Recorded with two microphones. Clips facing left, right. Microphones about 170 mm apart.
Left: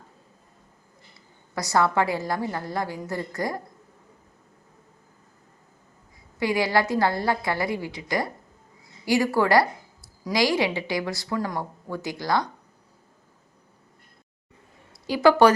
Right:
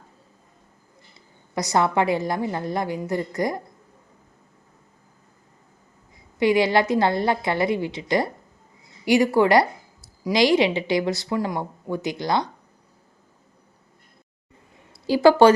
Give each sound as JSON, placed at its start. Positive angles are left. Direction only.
{"t": 1.5, "sound": "a woman's voice", "side_deg": -20}
{"t": 6.4, "sound": "a woman's voice", "side_deg": -20}
{"t": 15.0, "sound": "a woman's voice", "side_deg": -30}